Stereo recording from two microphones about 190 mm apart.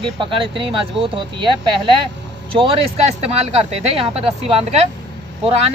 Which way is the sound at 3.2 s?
30° right (ahead or behind).